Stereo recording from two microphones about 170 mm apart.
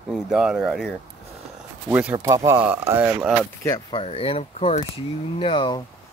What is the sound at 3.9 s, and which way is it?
Speech, 35° left (ahead or behind).